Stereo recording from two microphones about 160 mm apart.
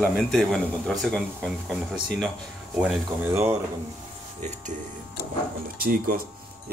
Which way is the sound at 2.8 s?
10° right (ahead or behind).